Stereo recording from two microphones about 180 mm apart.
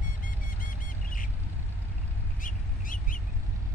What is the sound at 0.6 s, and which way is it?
Vehicle, 50° left (ahead or behind).